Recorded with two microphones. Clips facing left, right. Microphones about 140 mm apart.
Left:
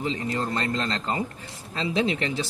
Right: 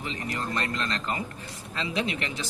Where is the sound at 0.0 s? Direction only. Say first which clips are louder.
Left 5 dB; 30° left (ahead or behind).